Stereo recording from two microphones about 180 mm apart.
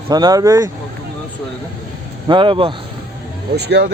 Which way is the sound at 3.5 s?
65° right (ahead or behind).